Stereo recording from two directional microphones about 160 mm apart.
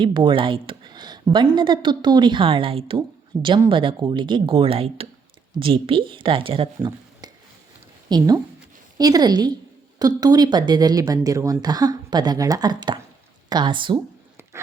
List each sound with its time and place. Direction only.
0.0 s a woman's voice: 30° right (ahead or behind)